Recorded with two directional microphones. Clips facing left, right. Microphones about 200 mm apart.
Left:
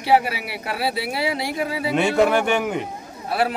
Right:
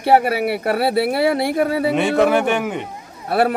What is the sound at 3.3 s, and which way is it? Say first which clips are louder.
Speech: right 5 dB; 55° right (ahead or behind).